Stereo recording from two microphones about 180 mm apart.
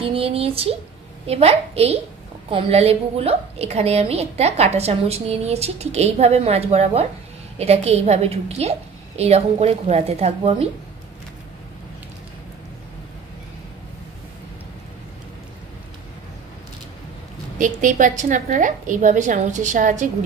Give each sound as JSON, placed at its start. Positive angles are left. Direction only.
{"t": 0.0, "sound": "a woman's voice", "side_deg": -30}
{"t": 17.6, "sound": "a woman's voice", "side_deg": -45}